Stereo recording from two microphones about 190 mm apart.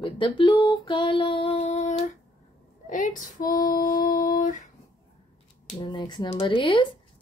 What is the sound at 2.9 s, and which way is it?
Female singing, 40° left (ahead or behind).